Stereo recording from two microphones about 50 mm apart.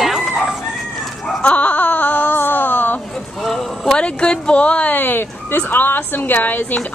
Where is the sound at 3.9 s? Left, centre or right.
Centre.